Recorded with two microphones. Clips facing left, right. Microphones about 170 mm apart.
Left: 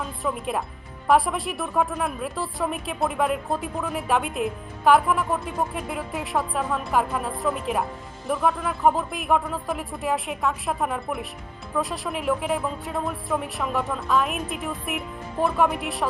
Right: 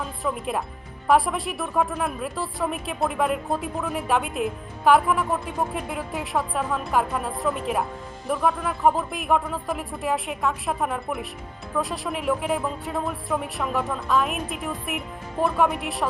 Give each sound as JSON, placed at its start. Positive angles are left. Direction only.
{"t": 0.0, "sound": "a woman's voice", "side_deg": 0}